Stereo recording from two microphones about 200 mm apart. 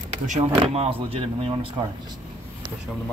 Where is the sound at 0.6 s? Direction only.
30° right (ahead or behind).